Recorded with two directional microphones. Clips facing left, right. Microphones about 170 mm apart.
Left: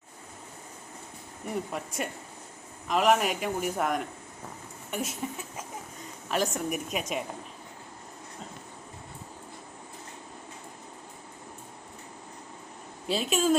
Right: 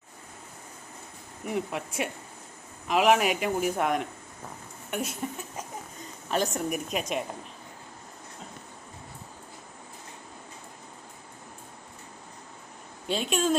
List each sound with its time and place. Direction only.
1.5 s speech: centre (ahead or behind)
6.3 s speech: centre (ahead or behind)
13.1 s speech: centre (ahead or behind)